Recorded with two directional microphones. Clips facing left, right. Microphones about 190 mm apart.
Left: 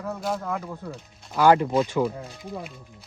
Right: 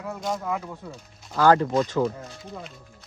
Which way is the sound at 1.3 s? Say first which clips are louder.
Even; 15° left (ahead or behind).